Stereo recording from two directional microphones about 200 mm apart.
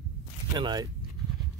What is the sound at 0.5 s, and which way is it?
Speech, 20° right (ahead or behind).